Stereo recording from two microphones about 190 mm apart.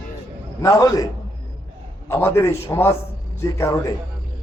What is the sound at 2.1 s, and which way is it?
A man's voice, 10° left (ahead or behind).